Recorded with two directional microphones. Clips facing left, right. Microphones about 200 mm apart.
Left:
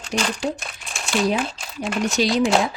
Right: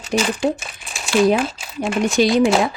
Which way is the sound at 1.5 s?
5° right (ahead or behind).